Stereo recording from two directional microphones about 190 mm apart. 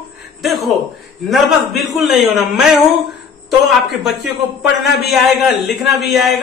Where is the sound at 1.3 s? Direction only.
Centre (ahead or behind).